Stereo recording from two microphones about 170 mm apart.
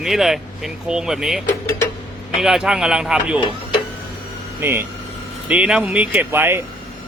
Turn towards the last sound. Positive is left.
turn(degrees=-10)  # may be behind; listen again after turning